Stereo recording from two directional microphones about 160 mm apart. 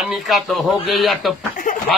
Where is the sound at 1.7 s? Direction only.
55° left (ahead or behind).